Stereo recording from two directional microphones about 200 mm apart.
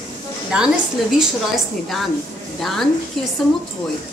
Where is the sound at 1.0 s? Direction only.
Centre (ahead or behind).